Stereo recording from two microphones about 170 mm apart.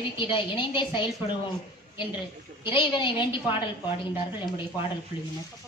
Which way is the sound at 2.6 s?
30° left (ahead or behind).